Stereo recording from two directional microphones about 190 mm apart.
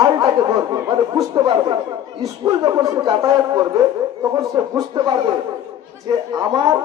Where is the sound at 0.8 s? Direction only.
20° right (ahead or behind).